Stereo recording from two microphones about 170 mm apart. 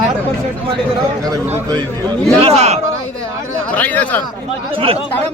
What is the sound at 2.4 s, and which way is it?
Speech, 35° right (ahead or behind).